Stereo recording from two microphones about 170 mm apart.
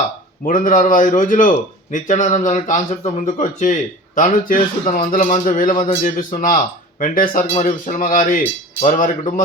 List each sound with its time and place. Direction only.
0.4 s a man's voice: 50° left (ahead or behind)